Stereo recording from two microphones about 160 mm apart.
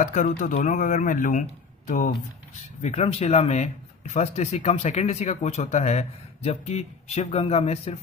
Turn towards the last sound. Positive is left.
turn(degrees=40)  # may be behind; listen again after turning